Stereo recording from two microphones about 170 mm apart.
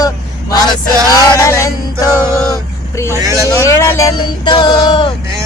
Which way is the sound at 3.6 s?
15° left (ahead or behind).